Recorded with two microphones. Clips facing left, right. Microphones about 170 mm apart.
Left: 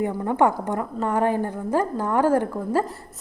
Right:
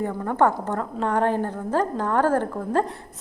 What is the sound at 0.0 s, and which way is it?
A woman's voice, 15° left (ahead or behind).